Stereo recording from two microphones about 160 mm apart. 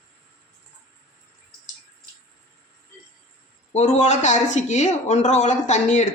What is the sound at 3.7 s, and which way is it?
Speech, 45° left (ahead or behind).